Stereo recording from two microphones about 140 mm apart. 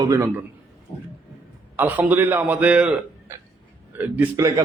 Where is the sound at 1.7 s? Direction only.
10° right (ahead or behind).